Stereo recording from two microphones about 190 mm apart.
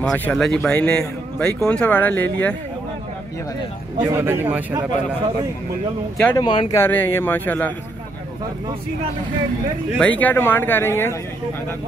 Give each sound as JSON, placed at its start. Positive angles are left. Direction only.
{"t": 0.0, "sound": "speech", "side_deg": 5}
{"t": 4.0, "sound": "speech", "side_deg": -15}
{"t": 6.3, "sound": "speech", "side_deg": 25}
{"t": 6.8, "sound": "speech", "side_deg": 10}
{"t": 9.9, "sound": "speech", "side_deg": 5}